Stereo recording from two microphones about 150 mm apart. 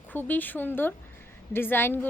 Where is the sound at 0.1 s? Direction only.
10° left (ahead or behind).